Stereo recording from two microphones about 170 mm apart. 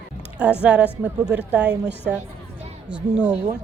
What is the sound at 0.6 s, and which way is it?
Speech, 10° right (ahead or behind).